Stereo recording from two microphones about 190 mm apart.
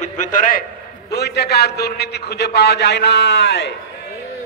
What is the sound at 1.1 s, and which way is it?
A man's voice, 60° left (ahead or behind).